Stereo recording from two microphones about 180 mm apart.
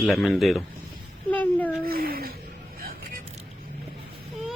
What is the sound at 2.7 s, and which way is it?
Music, 50° right (ahead or behind).